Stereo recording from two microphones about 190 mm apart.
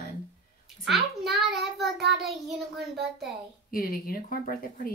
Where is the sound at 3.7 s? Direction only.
50° left (ahead or behind).